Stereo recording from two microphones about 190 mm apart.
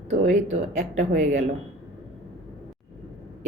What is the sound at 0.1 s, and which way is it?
A woman's voice, 35° right (ahead or behind).